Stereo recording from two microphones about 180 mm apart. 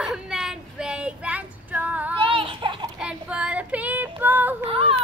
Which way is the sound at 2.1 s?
30° right (ahead or behind).